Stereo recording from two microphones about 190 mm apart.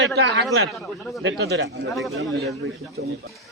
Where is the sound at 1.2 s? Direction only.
70° right (ahead or behind).